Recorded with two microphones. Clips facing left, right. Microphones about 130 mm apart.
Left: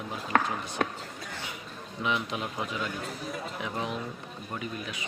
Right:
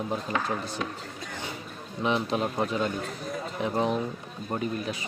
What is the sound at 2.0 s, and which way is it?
Speech, 35° right (ahead or behind).